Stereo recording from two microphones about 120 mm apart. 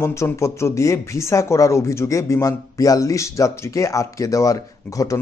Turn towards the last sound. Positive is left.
turn(degrees=25)  # may be behind; listen again after turning